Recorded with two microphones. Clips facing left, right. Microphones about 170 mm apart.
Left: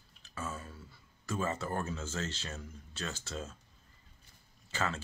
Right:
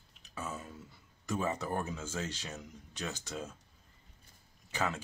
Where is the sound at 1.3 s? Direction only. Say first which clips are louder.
Right 1 dB; 15° right (ahead or behind).